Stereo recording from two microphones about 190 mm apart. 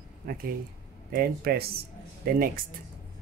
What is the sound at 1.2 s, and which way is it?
Speech, 55° right (ahead or behind).